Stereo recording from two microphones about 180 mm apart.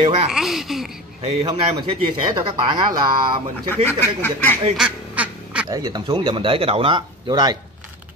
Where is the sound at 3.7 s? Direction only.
10° left (ahead or behind).